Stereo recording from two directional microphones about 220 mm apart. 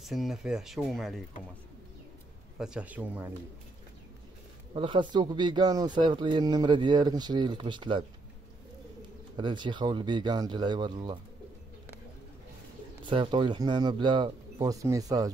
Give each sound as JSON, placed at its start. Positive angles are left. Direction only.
{"t": 0.0, "sound": "speech", "side_deg": 0}
{"t": 2.6, "sound": "a man's voice", "side_deg": -5}
{"t": 4.7, "sound": "speech", "side_deg": -20}
{"t": 9.4, "sound": "speech", "side_deg": -20}
{"t": 13.0, "sound": "speech", "side_deg": -20}